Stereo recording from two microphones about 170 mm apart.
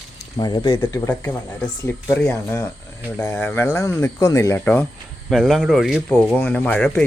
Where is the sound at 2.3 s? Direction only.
15° left (ahead or behind).